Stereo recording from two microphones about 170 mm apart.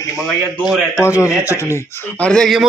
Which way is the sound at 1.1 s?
15° left (ahead or behind).